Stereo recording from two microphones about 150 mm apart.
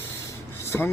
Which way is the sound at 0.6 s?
15° left (ahead or behind).